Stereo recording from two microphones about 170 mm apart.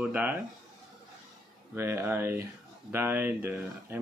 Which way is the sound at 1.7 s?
15° right (ahead or behind).